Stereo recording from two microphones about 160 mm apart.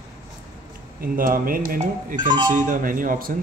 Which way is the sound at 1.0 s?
60° right (ahead or behind).